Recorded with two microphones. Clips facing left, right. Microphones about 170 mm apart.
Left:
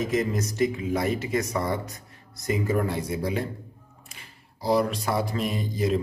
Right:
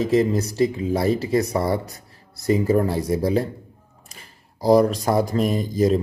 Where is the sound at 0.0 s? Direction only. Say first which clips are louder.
Right 7 dB; 30° right (ahead or behind).